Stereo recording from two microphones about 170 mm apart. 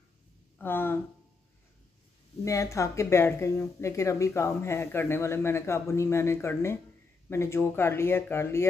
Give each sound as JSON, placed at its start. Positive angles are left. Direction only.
{"t": 0.6, "sound": "speech", "side_deg": 10}
{"t": 2.4, "sound": "speech", "side_deg": 20}